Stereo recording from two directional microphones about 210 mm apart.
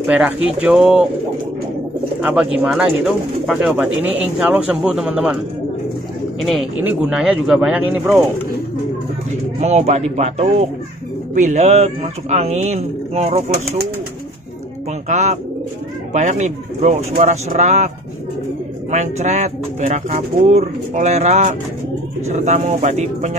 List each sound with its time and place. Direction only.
0.0 s speech: 5° right (ahead or behind)
2.2 s speech: 5° right (ahead or behind)
6.4 s speech: 5° right (ahead or behind)
9.6 s speech: 30° right (ahead or behind)
15.0 s speech: 35° right (ahead or behind)